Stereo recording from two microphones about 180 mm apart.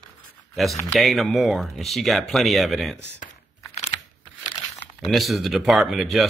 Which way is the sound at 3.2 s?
40° left (ahead or behind).